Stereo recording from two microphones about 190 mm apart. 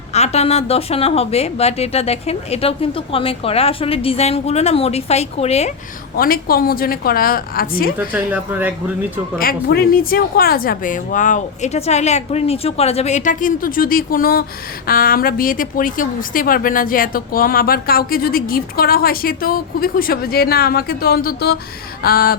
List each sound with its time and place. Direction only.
0.1 s a woman's voice: 35° left (ahead or behind)
6.1 s a woman's voice: 50° left (ahead or behind)
7.9 s speech: 10° right (ahead or behind)
9.4 s a woman's voice: 50° left (ahead or behind)